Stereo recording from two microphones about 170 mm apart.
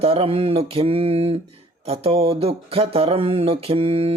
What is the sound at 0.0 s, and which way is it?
Speech, 35° right (ahead or behind).